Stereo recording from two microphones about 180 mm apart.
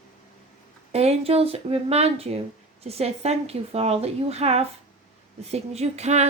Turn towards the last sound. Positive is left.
turn(degrees=-40)  # may be behind; listen again after turning